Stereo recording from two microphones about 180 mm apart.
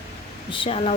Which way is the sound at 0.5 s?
30° left (ahead or behind).